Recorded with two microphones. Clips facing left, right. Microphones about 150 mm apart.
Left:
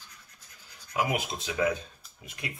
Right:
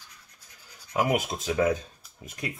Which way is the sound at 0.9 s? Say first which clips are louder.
Right 4 dB; 45° right (ahead or behind).